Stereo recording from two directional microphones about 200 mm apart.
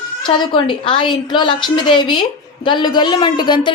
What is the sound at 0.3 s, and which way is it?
A woman's voice, 25° left (ahead or behind).